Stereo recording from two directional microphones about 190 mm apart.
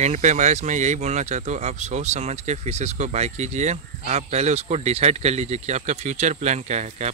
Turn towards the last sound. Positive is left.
turn(degrees=-35)  # may be behind; listen again after turning